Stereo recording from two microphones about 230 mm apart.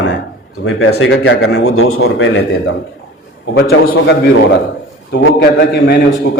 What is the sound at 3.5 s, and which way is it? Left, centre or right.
Speech, left.